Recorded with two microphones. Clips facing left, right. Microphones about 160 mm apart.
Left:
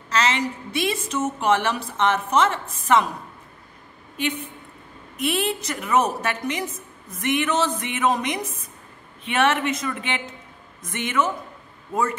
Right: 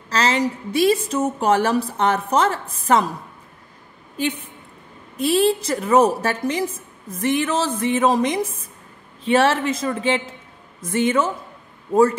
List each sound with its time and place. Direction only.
0.1 s a woman's voice: 35° right (ahead or behind)
5.1 s a woman's voice: 35° right (ahead or behind)